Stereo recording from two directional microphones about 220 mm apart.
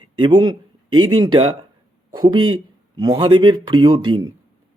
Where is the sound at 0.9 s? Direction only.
75° right (ahead or behind).